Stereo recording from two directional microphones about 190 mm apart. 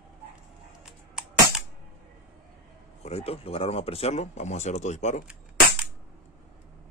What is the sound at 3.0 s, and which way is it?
Speech, 30° left (ahead or behind).